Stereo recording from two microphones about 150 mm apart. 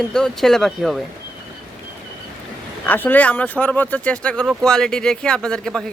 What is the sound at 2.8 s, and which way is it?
A man's voice, 10° left (ahead or behind).